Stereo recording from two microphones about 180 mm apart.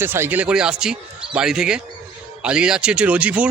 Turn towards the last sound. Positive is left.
turn(degrees=-5)  # may be behind; listen again after turning